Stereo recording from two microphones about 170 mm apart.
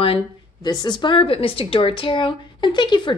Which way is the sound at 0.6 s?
25° left (ahead or behind).